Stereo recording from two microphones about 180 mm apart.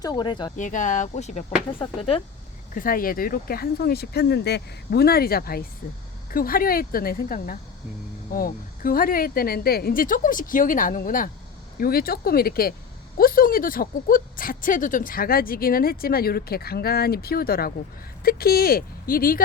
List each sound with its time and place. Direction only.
0.0 s speech: 25° left (ahead or behind)
0.5 s speech: 45° left (ahead or behind)
2.7 s speech: 50° left (ahead or behind)